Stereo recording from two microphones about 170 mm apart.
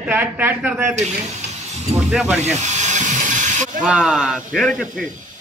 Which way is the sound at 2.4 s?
40° right (ahead or behind).